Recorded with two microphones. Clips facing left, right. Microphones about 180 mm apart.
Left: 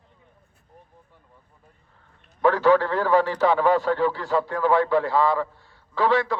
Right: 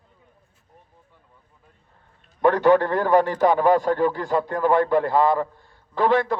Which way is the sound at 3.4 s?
50° right (ahead or behind).